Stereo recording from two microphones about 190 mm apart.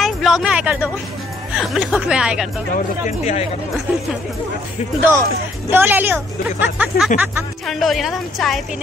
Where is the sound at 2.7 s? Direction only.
40° left (ahead or behind).